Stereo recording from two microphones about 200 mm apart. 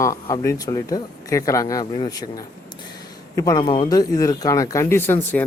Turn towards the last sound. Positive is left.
turn(degrees=10)  # may be behind; listen again after turning